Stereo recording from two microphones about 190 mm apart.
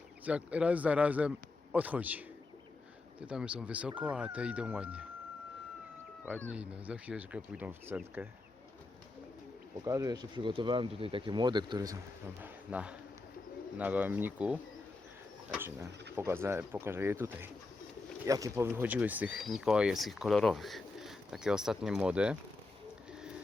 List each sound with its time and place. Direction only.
0.3 s speech: 5° right (ahead or behind)
6.5 s speech: 5° right (ahead or behind)
9.8 s speech: 15° right (ahead or behind)
12.4 s speech: 5° right (ahead or behind)